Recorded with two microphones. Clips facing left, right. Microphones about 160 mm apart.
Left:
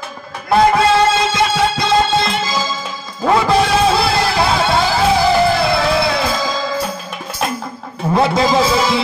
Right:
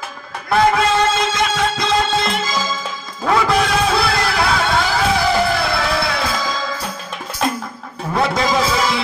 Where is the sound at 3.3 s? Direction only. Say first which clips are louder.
Left 3 dB; 30° left (ahead or behind).